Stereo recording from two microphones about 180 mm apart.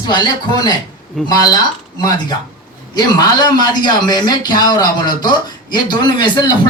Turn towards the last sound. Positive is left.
turn(degrees=25)  # may be behind; listen again after turning